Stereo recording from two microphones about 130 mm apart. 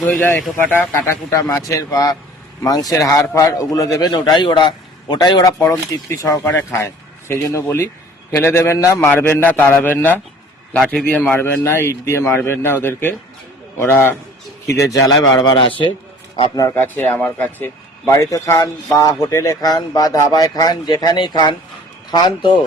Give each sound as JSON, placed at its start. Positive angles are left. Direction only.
{"t": 0.0, "sound": "a man's voice", "side_deg": 10}
{"t": 5.5, "sound": "a man's voice", "side_deg": 10}
{"t": 5.9, "sound": "a man's voice", "side_deg": 25}
{"t": 15.4, "sound": "a man's voice", "side_deg": 40}
{"t": 16.6, "sound": "speech", "side_deg": 25}
{"t": 16.8, "sound": "a man's voice", "side_deg": 15}